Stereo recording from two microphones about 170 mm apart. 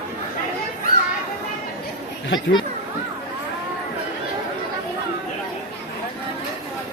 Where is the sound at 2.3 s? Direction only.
25° left (ahead or behind).